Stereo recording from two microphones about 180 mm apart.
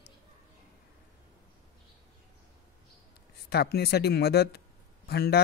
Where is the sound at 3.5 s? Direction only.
60° left (ahead or behind).